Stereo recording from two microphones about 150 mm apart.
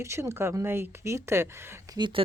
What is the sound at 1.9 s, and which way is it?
Speech, 30° right (ahead or behind).